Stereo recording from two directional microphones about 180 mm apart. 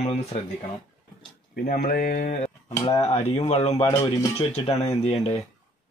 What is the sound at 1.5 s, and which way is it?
Speech, 50° left (ahead or behind).